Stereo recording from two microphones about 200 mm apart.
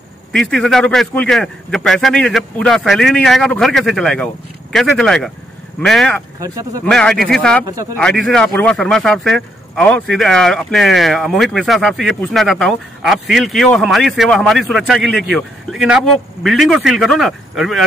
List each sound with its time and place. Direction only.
0.3 s a man's voice: 5° left (ahead or behind)
6.4 s speech: 15° right (ahead or behind)
6.9 s a man's voice: 5° left (ahead or behind)